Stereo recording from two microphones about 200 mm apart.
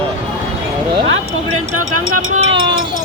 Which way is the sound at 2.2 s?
80° right.